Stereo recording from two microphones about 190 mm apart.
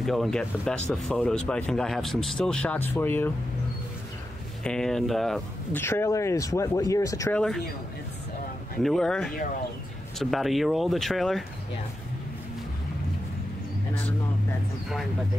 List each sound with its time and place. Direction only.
0.0 s speech: centre (ahead or behind)
4.6 s speech: 5° left (ahead or behind)
5.8 s speech: 15° left (ahead or behind)
8.8 s speech: centre (ahead or behind)